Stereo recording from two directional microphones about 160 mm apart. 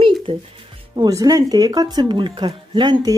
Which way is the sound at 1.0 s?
25° right (ahead or behind).